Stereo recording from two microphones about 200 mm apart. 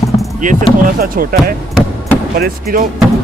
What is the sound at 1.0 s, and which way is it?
Speech, 45° right (ahead or behind).